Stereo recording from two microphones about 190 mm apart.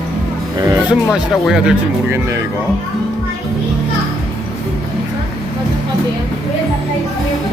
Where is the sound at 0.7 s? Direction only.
5° right (ahead or behind).